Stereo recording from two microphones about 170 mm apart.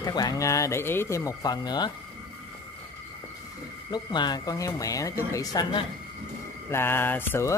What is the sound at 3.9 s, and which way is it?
Speech, 25° left (ahead or behind).